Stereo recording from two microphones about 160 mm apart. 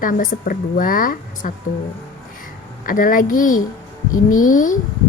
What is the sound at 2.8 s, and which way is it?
A woman's voice, 60° left (ahead or behind).